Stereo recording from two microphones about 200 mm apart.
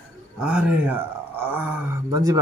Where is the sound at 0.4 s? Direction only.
5° right (ahead or behind).